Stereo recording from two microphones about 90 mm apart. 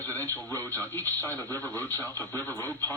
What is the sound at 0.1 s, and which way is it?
Radio, 40° right (ahead or behind).